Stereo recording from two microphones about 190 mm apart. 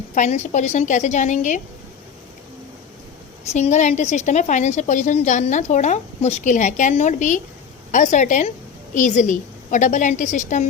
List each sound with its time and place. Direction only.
0.1 s a woman's voice: 40° left (ahead or behind)
3.5 s a woman's voice: 35° left (ahead or behind)